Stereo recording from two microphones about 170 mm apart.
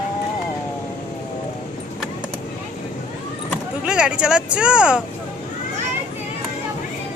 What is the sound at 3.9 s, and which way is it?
Speech, 5° right (ahead or behind).